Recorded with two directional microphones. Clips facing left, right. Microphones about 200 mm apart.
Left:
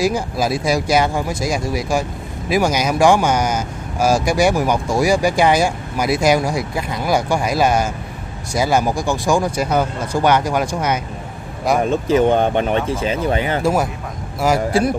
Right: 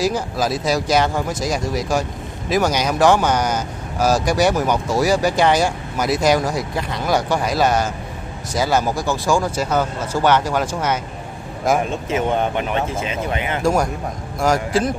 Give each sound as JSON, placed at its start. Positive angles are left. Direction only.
{"t": 0.0, "sound": "speech", "side_deg": 10}
{"t": 11.7, "sound": "speech", "side_deg": 0}
{"t": 12.1, "sound": "speech", "side_deg": 35}
{"t": 13.6, "sound": "speech", "side_deg": 5}